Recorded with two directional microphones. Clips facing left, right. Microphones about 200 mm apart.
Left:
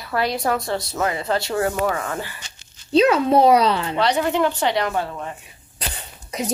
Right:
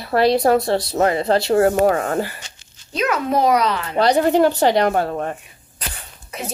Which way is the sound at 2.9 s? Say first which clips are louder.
Left 5 dB; 30° left (ahead or behind).